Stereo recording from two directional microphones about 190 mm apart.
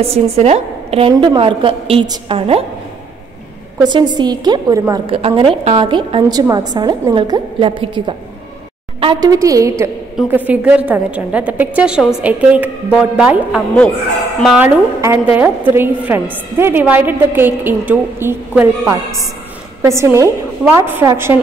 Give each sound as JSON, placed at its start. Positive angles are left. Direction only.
{"t": 0.0, "sound": "a woman's voice", "side_deg": -35}
{"t": 3.8, "sound": "a woman's voice", "side_deg": -25}
{"t": 5.0, "sound": "a woman's voice", "side_deg": -30}
{"t": 9.3, "sound": "a woman's voice", "side_deg": -15}
{"t": 15.0, "sound": "a woman's voice", "side_deg": -15}